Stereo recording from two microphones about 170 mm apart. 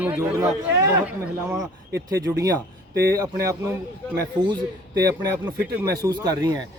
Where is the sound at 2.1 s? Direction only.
20° right (ahead or behind).